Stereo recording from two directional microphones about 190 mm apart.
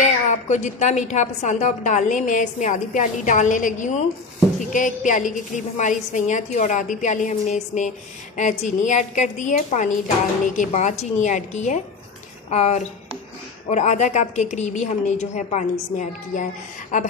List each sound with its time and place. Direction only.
0.0 s a woman's voice: 40° left (ahead or behind)